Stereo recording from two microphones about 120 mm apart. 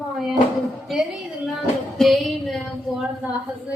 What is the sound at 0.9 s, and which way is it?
Speech, centre (ahead or behind).